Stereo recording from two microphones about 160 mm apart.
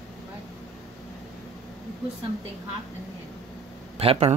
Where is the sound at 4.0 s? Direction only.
35° right (ahead or behind).